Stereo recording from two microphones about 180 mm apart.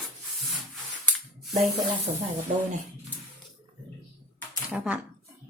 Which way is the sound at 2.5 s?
45° right (ahead or behind).